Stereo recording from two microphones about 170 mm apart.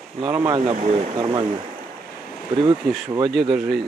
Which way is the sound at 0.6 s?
40° right (ahead or behind).